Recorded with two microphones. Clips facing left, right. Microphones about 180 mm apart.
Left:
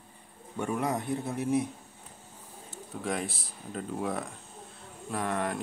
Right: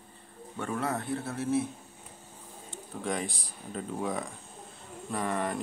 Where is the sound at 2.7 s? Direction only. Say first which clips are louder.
Even; centre (ahead or behind).